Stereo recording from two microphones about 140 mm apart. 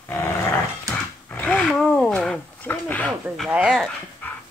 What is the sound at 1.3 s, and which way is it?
Speech, 10° left (ahead or behind).